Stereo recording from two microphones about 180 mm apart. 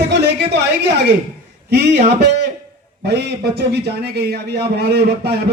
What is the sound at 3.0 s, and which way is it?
A man's voice, 65° right (ahead or behind).